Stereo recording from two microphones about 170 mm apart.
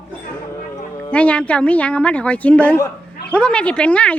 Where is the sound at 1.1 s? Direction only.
5° left (ahead or behind).